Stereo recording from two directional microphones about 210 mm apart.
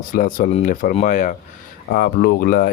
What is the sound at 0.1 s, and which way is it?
Speech, 40° left (ahead or behind).